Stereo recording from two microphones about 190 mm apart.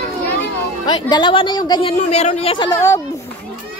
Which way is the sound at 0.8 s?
25° left (ahead or behind).